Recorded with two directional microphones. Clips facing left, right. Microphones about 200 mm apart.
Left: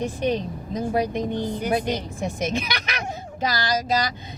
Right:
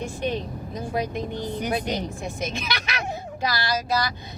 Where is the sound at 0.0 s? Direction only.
20° left (ahead or behind).